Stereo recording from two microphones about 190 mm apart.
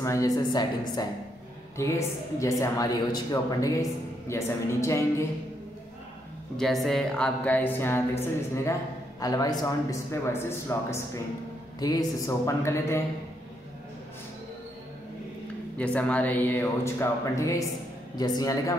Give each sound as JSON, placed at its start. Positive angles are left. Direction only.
{"t": 0.0, "sound": "speech", "side_deg": 15}
{"t": 6.5, "sound": "speech", "side_deg": 0}
{"t": 15.8, "sound": "speech", "side_deg": 5}